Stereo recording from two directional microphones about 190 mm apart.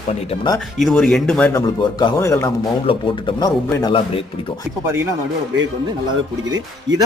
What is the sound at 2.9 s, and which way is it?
Speech, 30° left (ahead or behind).